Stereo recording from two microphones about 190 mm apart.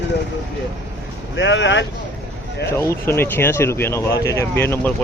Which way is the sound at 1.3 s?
75° left (ahead or behind).